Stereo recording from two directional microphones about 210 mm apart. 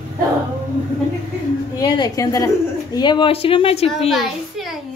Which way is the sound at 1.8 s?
20° left (ahead or behind).